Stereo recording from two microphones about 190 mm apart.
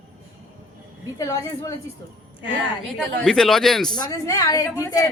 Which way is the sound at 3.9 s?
20° left (ahead or behind).